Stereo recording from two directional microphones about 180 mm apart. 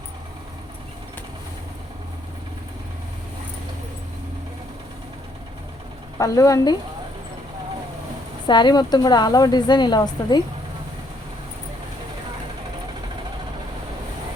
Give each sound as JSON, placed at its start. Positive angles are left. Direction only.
{"t": 6.1, "sound": "speech", "side_deg": 20}
{"t": 8.4, "sound": "a woman's voice", "side_deg": 25}